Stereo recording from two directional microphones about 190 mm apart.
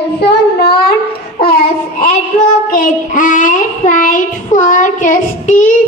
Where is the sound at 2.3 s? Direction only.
40° left (ahead or behind).